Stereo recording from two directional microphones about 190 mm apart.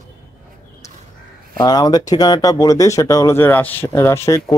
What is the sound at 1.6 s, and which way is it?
Speech, 20° left (ahead or behind).